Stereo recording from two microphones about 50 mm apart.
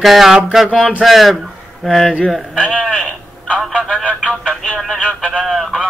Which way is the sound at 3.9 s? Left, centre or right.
Right.